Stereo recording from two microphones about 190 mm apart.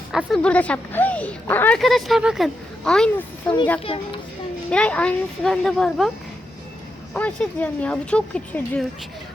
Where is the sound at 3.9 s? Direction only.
25° left (ahead or behind).